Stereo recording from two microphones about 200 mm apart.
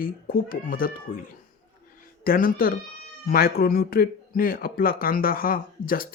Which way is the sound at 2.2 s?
45° left (ahead or behind).